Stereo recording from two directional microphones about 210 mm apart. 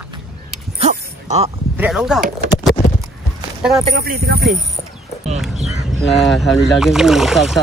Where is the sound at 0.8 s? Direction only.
30° right (ahead or behind).